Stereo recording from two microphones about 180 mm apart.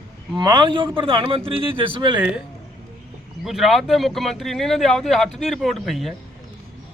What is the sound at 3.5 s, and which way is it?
A man's voice, centre (ahead or behind).